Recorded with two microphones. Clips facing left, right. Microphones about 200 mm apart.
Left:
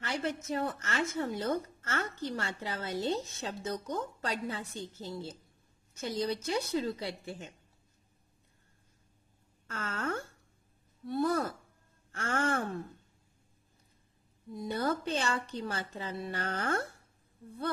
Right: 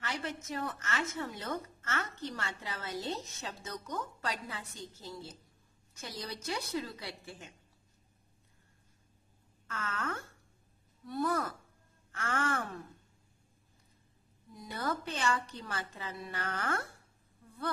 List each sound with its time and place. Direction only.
0.0 s a woman's voice: 30° left (ahead or behind)
9.7 s a woman's voice: 30° left (ahead or behind)
14.5 s a woman's voice: 25° left (ahead or behind)